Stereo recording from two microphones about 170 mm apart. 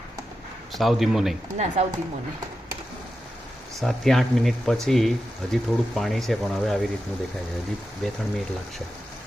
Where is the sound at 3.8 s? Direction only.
Centre (ahead or behind).